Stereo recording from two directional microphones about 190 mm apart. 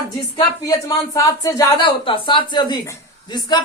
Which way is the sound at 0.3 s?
20° left (ahead or behind).